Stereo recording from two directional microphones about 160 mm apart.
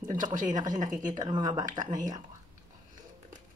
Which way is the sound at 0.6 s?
50° right (ahead or behind).